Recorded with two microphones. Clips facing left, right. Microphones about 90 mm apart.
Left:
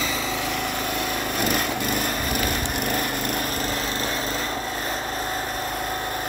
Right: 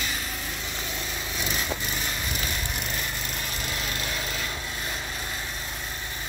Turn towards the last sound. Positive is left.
turn(degrees=40)  # may be behind; listen again after turning